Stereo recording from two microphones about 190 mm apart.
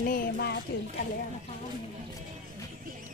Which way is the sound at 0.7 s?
60° left (ahead or behind).